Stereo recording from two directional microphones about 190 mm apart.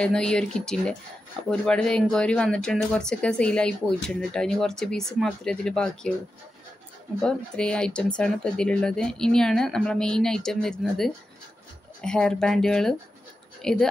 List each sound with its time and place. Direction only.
0.0 s speech: 5° left (ahead or behind)
7.2 s speech: 5° left (ahead or behind)